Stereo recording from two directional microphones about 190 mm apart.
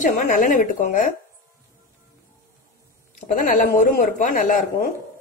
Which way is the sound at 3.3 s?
45° left (ahead or behind).